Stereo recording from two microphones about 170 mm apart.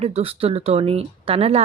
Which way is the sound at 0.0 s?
35° right (ahead or behind).